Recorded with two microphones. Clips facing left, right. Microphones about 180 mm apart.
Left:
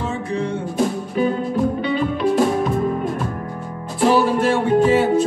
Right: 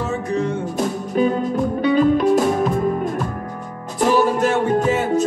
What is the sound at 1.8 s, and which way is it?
Music, 45° right (ahead or behind).